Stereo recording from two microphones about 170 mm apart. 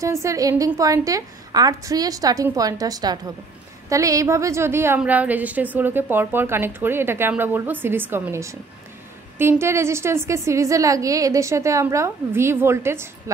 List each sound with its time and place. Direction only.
0.0 s a woman's voice: 20° right (ahead or behind)